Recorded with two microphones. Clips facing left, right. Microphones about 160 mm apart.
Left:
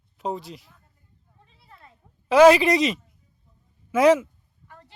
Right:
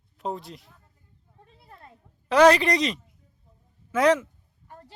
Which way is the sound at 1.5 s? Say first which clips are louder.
Right 2 dB; 50° right (ahead or behind).